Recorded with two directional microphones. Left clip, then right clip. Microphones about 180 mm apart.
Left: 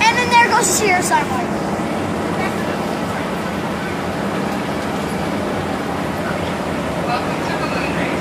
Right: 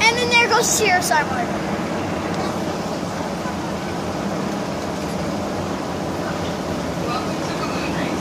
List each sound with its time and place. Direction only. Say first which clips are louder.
0.0 s vehicle: left 3 dB; 40° right (ahead or behind)